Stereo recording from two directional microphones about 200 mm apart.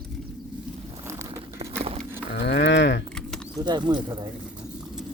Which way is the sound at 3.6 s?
20° right (ahead or behind).